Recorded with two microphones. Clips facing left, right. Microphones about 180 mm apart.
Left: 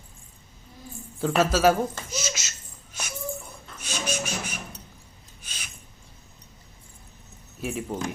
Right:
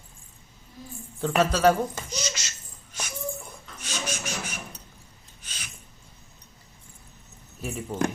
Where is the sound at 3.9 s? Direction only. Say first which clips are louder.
Left 3 dB; 10° left (ahead or behind).